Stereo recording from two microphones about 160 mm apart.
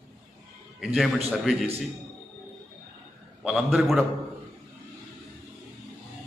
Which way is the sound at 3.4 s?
5° right (ahead or behind).